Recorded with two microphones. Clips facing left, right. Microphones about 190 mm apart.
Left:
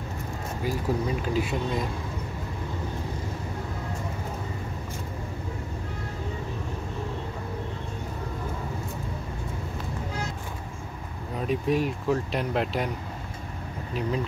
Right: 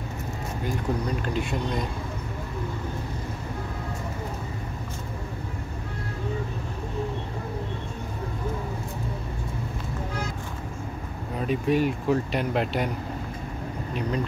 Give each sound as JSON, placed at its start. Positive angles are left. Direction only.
{"t": 0.7, "sound": "speech", "side_deg": 5}
{"t": 11.3, "sound": "speech", "side_deg": 0}